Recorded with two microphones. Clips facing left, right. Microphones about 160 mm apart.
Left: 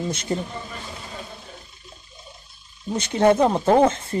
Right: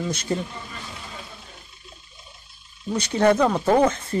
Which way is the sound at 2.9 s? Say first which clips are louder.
Left 1 dB; 25° left (ahead or behind).